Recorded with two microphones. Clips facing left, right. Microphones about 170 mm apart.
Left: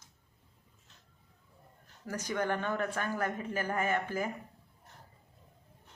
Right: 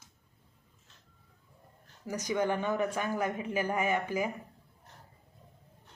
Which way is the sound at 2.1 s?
10° right (ahead or behind).